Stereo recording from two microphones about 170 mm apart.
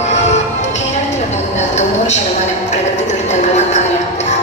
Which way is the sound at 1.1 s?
45° left (ahead or behind).